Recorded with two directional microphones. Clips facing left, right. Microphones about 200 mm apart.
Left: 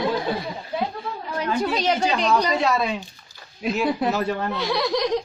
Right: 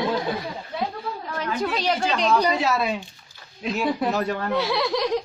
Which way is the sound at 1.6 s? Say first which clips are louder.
Left 1 dB; 20° left (ahead or behind).